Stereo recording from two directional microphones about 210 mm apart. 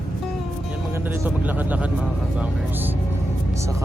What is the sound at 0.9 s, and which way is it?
Speech, 10° right (ahead or behind).